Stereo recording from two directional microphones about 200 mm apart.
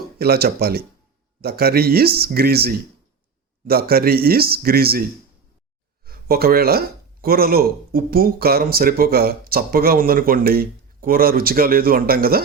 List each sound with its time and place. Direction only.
0.2 s speech: 50° right (ahead or behind)
6.1 s speech: 50° right (ahead or behind)